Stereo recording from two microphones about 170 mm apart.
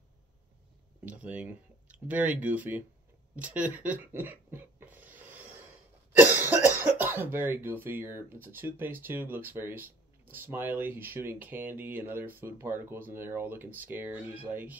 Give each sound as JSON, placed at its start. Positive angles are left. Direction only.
{"t": 1.0, "sound": "speech", "side_deg": -10}
{"t": 3.3, "sound": "a sound", "side_deg": -10}
{"t": 6.1, "sound": "cough", "side_deg": -10}
{"t": 6.8, "sound": "speech", "side_deg": -10}